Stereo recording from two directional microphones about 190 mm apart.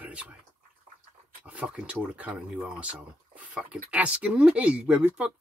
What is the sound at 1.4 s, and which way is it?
Speech, 5° right (ahead or behind).